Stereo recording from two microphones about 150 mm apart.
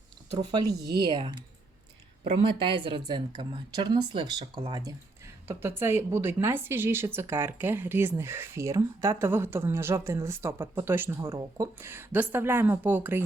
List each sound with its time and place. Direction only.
1.0 s speech: 30° right (ahead or behind)
2.4 s speech: 35° right (ahead or behind)
5.5 s a woman's voice: 15° right (ahead or behind)